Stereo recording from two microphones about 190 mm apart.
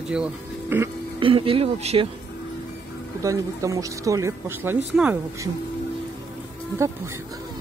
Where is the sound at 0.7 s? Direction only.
10° right (ahead or behind).